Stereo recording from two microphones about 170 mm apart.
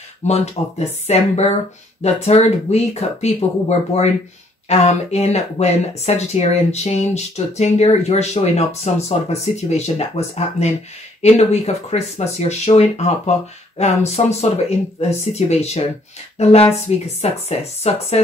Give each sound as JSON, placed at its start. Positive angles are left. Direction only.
{"t": 0.3, "sound": "speech", "side_deg": 40}